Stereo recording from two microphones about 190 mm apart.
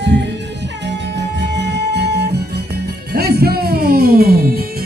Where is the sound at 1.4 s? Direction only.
65° right (ahead or behind).